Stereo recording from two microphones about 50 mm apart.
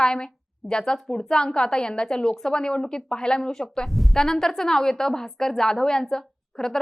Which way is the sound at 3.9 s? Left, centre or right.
Centre.